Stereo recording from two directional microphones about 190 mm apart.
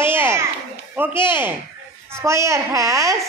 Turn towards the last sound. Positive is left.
turn(degrees=-15)  # may be behind; listen again after turning